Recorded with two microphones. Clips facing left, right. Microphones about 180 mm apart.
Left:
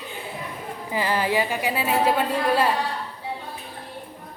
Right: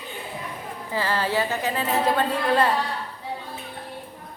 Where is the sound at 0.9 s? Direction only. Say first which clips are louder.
Left 1 dB; 15° left (ahead or behind).